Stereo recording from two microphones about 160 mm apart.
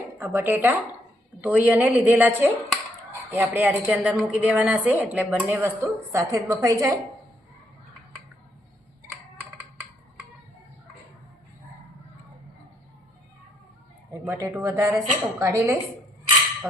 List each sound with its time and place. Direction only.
0.2 s a woman's voice: 15° right (ahead or behind)
14.1 s a woman's voice: 20° right (ahead or behind)